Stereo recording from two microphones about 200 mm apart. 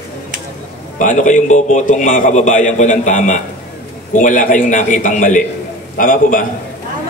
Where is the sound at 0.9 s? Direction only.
40° left (ahead or behind).